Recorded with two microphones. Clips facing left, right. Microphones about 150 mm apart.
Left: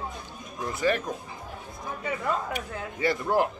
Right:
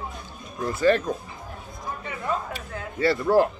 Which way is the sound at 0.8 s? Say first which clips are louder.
Right 6 dB; 15° left (ahead or behind).